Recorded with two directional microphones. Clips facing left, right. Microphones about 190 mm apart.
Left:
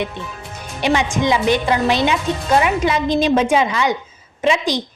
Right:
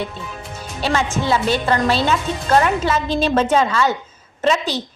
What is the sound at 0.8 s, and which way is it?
A woman's voice, 15° left (ahead or behind).